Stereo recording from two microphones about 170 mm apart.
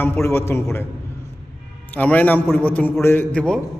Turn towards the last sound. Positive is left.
turn(degrees=5)  # may be behind; listen again after turning